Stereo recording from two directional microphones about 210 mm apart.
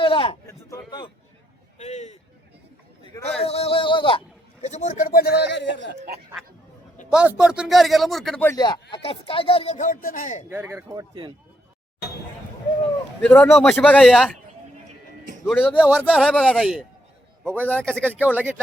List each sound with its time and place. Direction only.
0.0 s speech: 25° left (ahead or behind)
1.8 s speech: 30° left (ahead or behind)
3.0 s a sound: 20° left (ahead or behind)
3.4 s a man's voice: 25° left (ahead or behind); by 5.9 s 60° left (ahead or behind)
7.1 s speech: 5° right (ahead or behind)
8.4 s speech: 20° left (ahead or behind); by 10.4 s 40° left (ahead or behind)
10.5 s speech: 10° right (ahead or behind)
11.1 s speech: 25° right (ahead or behind)
13.2 s speech: 10° left (ahead or behind)
15.4 s speech: 10° left (ahead or behind)
15.7 s speech: 5° right (ahead or behind)
18.1 s speech: 5° right (ahead or behind)